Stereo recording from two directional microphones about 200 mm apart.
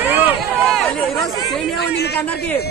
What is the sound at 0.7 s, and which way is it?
Chatter, centre (ahead or behind).